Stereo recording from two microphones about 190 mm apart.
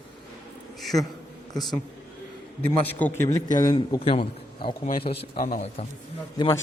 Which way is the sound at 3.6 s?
25° left (ahead or behind).